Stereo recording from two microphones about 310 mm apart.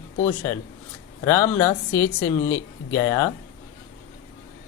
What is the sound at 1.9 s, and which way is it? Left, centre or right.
Speech, left.